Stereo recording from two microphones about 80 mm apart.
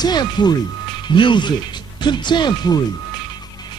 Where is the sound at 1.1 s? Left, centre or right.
Left.